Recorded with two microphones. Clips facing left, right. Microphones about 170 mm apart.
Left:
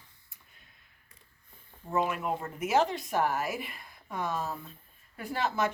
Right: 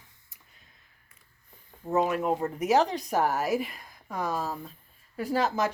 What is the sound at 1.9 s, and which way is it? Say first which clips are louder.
Speech: right 5 dB; 40° right (ahead or behind).